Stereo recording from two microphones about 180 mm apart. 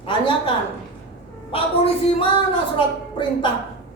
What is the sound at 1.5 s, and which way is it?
A woman's voice, 30° left (ahead or behind).